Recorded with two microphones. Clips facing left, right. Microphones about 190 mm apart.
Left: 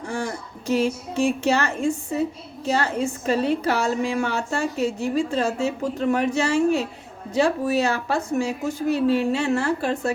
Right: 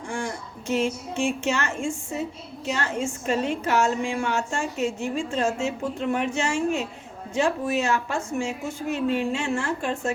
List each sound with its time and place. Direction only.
0.7 s a woman's voice: 40° left (ahead or behind)